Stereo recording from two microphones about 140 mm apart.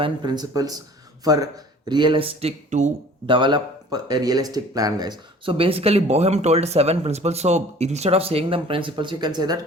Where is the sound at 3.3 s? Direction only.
35° right (ahead or behind).